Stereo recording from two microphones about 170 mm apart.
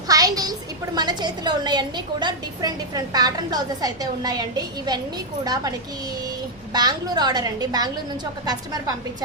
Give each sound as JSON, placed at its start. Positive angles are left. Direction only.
{"t": 0.1, "sound": "a sound", "side_deg": -20}
{"t": 0.9, "sound": "a woman's voice", "side_deg": -25}
{"t": 6.7, "sound": "a woman's voice", "side_deg": -25}